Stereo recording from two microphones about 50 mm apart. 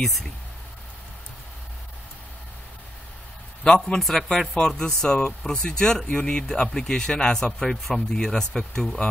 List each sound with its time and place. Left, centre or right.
0.0 s speech: centre
3.6 s speech: centre